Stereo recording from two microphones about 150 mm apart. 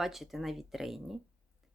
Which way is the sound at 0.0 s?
Centre (ahead or behind).